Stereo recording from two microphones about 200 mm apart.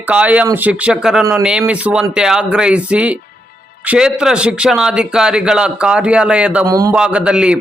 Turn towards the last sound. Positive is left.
turn(degrees=-5)  # may be behind; listen again after turning